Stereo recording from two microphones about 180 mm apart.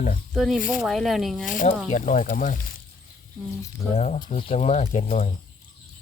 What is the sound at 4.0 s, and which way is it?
Speech, 40° left (ahead or behind).